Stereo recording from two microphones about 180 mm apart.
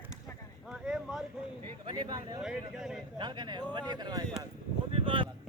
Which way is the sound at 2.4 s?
5° right (ahead or behind).